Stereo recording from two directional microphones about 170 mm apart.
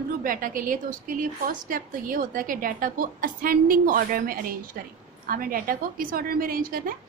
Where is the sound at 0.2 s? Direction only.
55° right (ahead or behind).